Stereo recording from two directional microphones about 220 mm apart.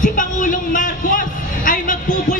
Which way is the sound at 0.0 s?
35° left (ahead or behind).